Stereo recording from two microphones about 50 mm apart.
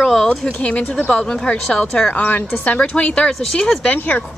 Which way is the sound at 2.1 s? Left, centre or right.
Left.